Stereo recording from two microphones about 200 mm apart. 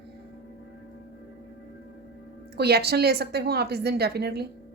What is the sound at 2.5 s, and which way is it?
Speech, 55° right (ahead or behind).